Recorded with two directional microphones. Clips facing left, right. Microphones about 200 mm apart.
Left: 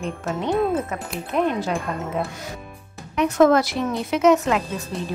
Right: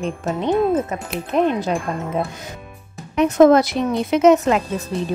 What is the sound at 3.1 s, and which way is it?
Speech, 20° right (ahead or behind).